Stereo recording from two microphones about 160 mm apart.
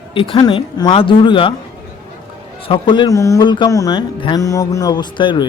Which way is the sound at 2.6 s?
30° left (ahead or behind).